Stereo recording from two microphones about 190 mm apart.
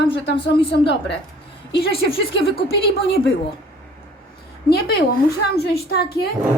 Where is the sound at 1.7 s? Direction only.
30° left (ahead or behind).